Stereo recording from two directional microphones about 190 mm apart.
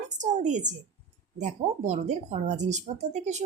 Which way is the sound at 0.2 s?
40° right (ahead or behind).